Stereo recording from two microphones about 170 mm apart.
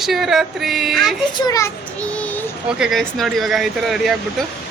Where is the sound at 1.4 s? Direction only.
20° left (ahead or behind).